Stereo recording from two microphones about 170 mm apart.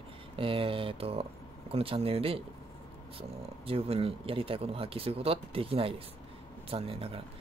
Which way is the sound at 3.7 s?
35° right (ahead or behind).